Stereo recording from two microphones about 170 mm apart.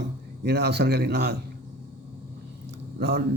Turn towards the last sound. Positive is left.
turn(degrees=-75)  # may be behind; listen again after turning